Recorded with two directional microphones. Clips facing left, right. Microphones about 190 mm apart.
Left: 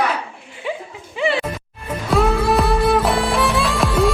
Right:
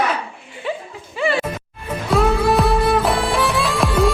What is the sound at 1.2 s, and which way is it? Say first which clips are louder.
Music: even; 15° left (ahead or behind).